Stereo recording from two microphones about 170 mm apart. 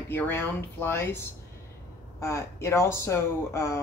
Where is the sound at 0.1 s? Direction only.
15° left (ahead or behind).